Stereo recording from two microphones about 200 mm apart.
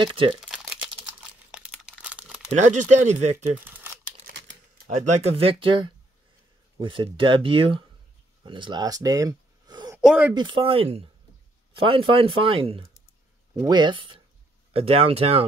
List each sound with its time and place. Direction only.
0.0 s speech: 25° right (ahead or behind)
0.4 s a sound: centre (ahead or behind)
1.5 s crumpling: 5° right (ahead or behind)
2.5 s speech: 35° right (ahead or behind)
3.6 s a sound: 10° right (ahead or behind)
4.3 s typewriter: 60° right (ahead or behind)
4.8 s speech: 35° right (ahead or behind); by 9.9 s 20° right (ahead or behind)
9.9 s speech: 5° right (ahead or behind)
10.3 s speech: 25° right (ahead or behind)